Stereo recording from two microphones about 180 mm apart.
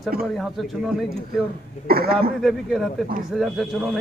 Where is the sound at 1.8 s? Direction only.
55° right (ahead or behind).